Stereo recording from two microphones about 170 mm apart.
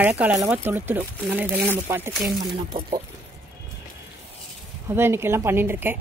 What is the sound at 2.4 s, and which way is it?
Speech, 30° right (ahead or behind).